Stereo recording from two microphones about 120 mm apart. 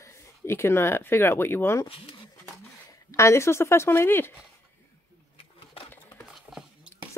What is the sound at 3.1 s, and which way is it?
A woman's voice, 25° left (ahead or behind).